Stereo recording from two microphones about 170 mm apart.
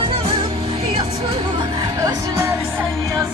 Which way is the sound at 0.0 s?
35° right (ahead or behind).